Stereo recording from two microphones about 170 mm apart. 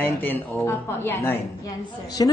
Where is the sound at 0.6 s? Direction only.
15° left (ahead or behind).